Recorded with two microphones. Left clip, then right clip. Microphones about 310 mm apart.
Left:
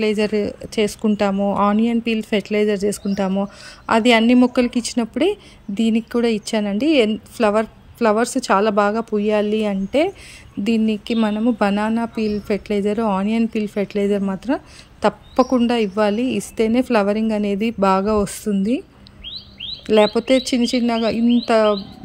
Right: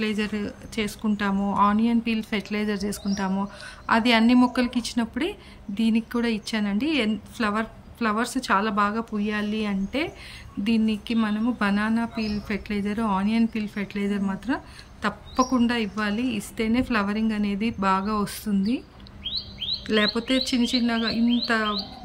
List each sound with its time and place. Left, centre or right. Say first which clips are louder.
0.0 s a woman's voice: left 10 dB; centre
19.9 s a woman's voice: left 10 dB; centre